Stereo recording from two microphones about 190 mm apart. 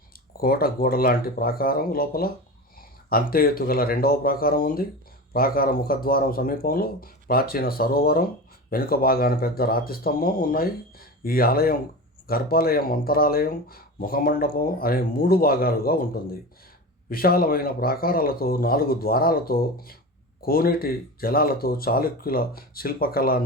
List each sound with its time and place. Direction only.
0.3 s speech: 50° left (ahead or behind)